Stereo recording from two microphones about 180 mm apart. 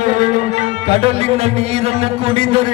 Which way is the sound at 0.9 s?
35° right (ahead or behind).